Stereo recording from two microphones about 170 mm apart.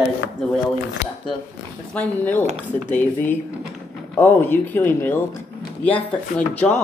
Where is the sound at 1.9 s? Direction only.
10° left (ahead or behind).